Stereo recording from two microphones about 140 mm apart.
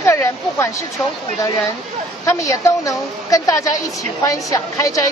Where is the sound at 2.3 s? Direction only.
20° left (ahead or behind).